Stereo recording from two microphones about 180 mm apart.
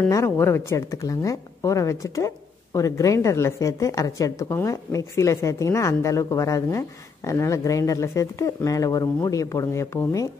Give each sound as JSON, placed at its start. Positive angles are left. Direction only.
{"t": 0.1, "sound": "speech", "side_deg": 15}